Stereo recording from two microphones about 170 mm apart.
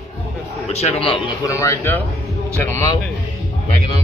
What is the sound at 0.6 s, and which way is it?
Speech, 40° left (ahead or behind).